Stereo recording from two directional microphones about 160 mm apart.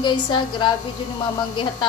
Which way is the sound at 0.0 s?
25° left (ahead or behind).